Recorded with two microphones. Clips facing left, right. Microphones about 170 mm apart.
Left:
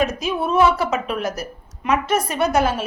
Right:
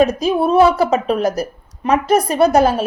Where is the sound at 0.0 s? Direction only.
35° right (ahead or behind).